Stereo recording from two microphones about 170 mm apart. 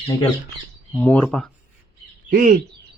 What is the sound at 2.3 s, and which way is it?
Speech, 50° right (ahead or behind).